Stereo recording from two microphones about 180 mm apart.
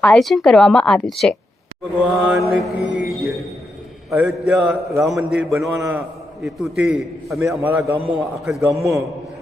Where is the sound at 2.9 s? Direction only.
15° right (ahead or behind).